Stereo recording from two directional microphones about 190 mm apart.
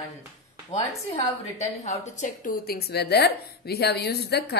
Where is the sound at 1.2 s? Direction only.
35° left (ahead or behind).